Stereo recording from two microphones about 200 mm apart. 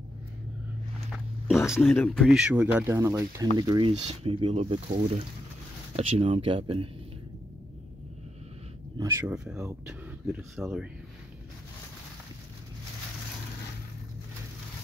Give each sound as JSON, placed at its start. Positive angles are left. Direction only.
{"t": 1.8, "sound": "speech", "side_deg": 5}
{"t": 8.9, "sound": "speech", "side_deg": -15}